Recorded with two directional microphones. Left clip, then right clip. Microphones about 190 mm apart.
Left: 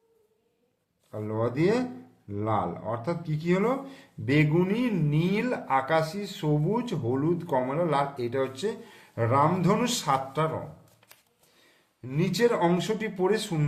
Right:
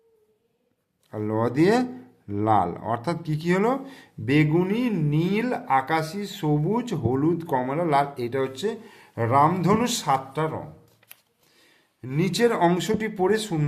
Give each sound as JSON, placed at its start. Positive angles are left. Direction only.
{"t": 1.1, "sound": "speech", "side_deg": -40}
{"t": 12.0, "sound": "speech", "side_deg": -35}